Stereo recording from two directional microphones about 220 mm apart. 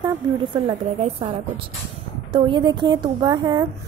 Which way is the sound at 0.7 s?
25° right (ahead or behind).